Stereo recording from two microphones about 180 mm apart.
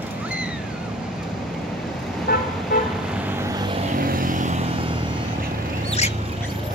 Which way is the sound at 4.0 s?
50° right (ahead or behind).